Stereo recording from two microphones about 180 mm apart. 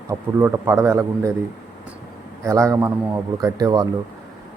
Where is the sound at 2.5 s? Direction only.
15° right (ahead or behind).